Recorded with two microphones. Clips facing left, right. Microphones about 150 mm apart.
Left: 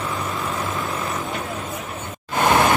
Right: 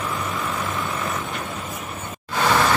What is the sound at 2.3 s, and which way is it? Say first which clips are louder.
Vehicle: left 2 dB; 20° left (ahead or behind).